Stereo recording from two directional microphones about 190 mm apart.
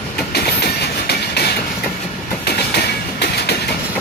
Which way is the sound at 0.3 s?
55° left (ahead or behind).